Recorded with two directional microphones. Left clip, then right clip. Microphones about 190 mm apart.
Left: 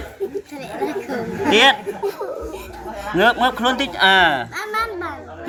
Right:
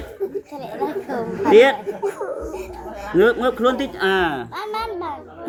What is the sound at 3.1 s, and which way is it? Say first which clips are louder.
Speech: left 1 dB; 20° left (ahead or behind).